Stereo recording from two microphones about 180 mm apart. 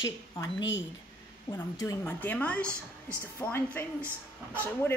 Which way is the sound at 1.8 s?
20° left (ahead or behind).